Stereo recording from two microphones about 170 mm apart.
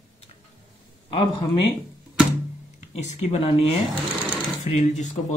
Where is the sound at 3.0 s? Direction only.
40° left (ahead or behind).